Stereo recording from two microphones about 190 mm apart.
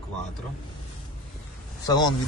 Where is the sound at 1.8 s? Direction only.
20° left (ahead or behind).